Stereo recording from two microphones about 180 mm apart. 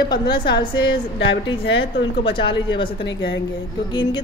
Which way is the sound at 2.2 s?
30° left (ahead or behind).